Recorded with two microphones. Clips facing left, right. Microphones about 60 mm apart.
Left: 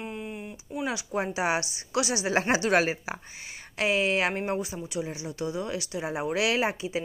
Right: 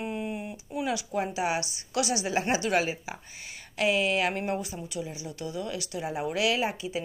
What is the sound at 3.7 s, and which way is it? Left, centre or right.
Speech, left.